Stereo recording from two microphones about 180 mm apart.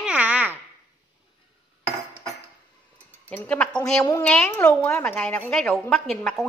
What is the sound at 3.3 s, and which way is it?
Speech, 10° left (ahead or behind).